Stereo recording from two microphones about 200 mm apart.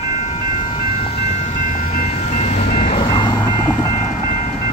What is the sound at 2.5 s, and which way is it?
Train, 55° left (ahead or behind).